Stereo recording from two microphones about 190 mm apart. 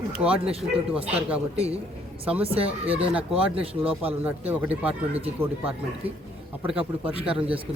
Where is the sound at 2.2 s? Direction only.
5° right (ahead or behind).